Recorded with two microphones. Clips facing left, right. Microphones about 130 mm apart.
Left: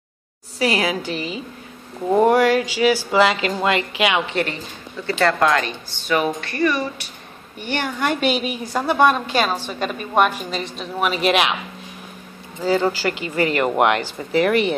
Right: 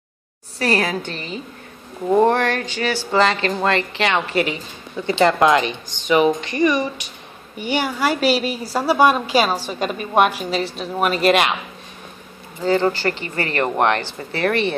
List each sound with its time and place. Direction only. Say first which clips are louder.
0.6 s speech: even; 5° left (ahead or behind)
4.3 s a woman's voice: right 3 dB; 5° right (ahead or behind)
5.0 s a woman's voice: right 3 dB; 15° right (ahead or behind); by 11.5 s centre (ahead or behind)
12.6 s speech: right 1 dB; 10° left (ahead or behind)